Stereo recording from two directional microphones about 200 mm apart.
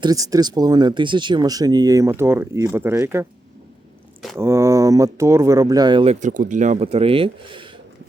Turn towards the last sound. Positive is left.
turn(degrees=-25)  # may be behind; listen again after turning